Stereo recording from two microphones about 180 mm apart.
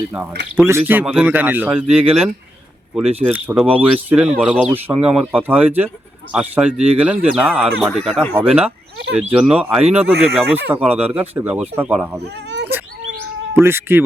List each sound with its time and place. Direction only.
0.5 s speech: 10° right (ahead or behind)
12.2 s speech: 70° right (ahead or behind)
13.6 s speech: 10° right (ahead or behind)